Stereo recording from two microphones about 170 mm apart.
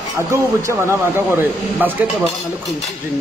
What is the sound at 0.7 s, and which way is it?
Speech, 15° right (ahead or behind).